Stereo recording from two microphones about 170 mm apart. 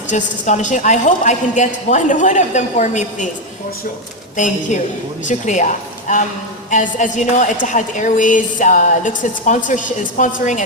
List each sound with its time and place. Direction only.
0.1 s a woman's voice: 45° left (ahead or behind)
4.4 s a woman's voice: 45° left (ahead or behind)